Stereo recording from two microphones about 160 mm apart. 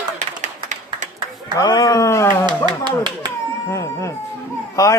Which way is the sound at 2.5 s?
30° right (ahead or behind).